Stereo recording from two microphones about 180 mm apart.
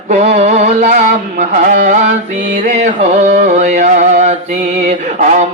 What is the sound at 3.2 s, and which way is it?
Mantra, 40° right (ahead or behind).